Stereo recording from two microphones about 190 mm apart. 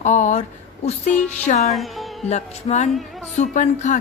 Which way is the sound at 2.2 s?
35° left (ahead or behind).